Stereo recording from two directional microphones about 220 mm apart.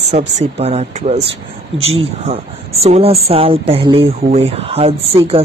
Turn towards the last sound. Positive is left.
turn(degrees=-25)  # may be behind; listen again after turning